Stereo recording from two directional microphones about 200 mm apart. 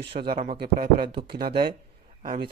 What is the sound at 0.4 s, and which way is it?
Mantra, 45° right (ahead or behind).